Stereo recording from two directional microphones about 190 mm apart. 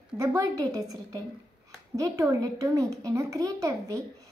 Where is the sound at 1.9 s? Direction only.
15° right (ahead or behind).